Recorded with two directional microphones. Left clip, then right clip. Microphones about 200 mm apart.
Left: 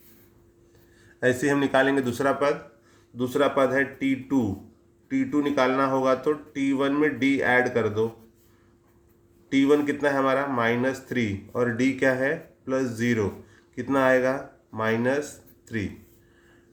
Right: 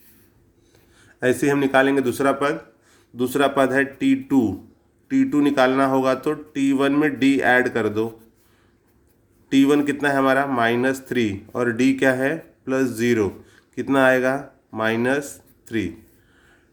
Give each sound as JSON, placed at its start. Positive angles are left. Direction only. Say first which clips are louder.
{"t": 1.2, "sound": "speech", "louder": "right 3 dB", "side_deg": -30}
{"t": 9.5, "sound": "speech", "louder": "right 3 dB", "side_deg": -40}